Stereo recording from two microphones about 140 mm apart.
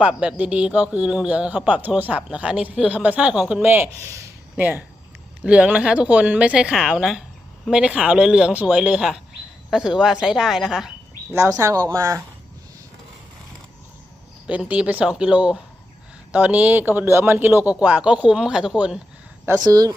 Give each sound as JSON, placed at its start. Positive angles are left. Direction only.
{"t": 0.0, "sound": "speech", "side_deg": -5}
{"t": 11.3, "sound": "speech", "side_deg": -20}
{"t": 14.4, "sound": "speech", "side_deg": -10}
{"t": 19.6, "sound": "speech", "side_deg": -25}